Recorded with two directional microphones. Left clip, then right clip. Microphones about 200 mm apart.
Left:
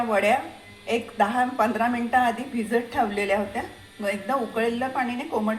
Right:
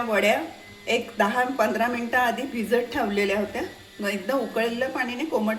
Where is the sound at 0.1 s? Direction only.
30° right (ahead or behind).